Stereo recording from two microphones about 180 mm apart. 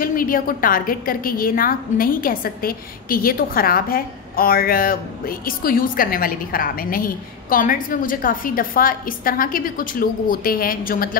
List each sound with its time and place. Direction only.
0.0 s a woman's voice: 50° left (ahead or behind)